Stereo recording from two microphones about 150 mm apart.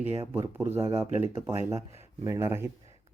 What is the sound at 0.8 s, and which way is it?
Speech, 40° right (ahead or behind).